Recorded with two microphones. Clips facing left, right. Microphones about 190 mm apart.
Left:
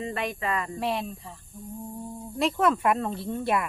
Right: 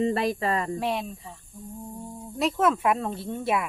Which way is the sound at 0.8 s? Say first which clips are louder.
Right 1 dB; centre (ahead or behind).